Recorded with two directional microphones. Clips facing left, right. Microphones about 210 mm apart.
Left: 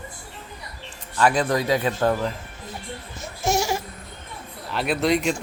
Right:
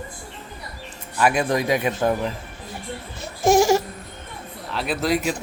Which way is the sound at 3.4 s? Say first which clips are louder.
Right 7 dB; 50° right (ahead or behind).